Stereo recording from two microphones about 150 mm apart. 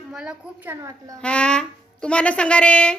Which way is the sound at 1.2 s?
5° left (ahead or behind).